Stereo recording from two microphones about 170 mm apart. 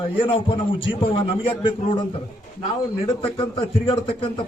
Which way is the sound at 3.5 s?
30° left (ahead or behind).